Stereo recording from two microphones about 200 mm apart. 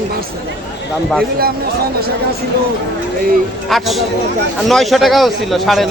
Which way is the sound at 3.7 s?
Centre (ahead or behind).